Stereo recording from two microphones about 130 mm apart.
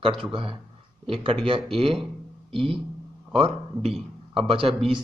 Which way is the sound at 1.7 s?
45° right (ahead or behind).